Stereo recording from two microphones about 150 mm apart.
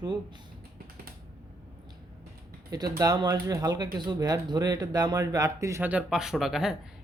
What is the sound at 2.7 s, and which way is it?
Speech, 25° right (ahead or behind).